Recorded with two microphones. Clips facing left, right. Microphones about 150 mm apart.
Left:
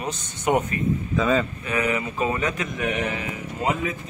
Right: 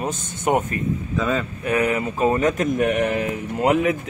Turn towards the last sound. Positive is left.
turn(degrees=-75)  # may be behind; listen again after turning